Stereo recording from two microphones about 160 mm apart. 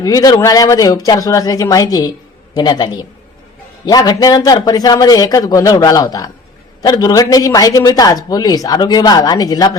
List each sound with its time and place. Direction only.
0.0 s speech: 25° left (ahead or behind)